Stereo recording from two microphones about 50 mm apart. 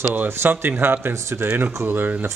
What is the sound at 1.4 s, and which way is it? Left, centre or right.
Speech, right.